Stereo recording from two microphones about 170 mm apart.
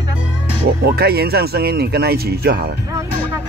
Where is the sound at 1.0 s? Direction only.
65° right (ahead or behind).